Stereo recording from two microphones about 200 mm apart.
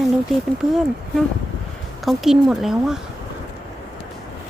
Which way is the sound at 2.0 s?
Centre (ahead or behind).